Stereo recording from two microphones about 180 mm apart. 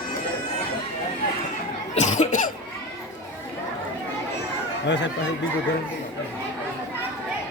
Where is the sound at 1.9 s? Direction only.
40° left (ahead or behind).